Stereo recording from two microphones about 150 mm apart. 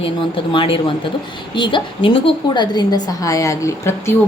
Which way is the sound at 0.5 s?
35° left (ahead or behind).